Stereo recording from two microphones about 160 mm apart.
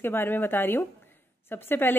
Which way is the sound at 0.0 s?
15° left (ahead or behind).